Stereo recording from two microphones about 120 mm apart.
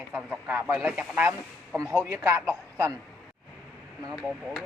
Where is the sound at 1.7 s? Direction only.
30° right (ahead or behind).